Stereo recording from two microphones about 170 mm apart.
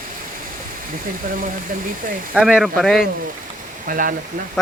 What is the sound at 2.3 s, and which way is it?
Speech, 5° right (ahead or behind).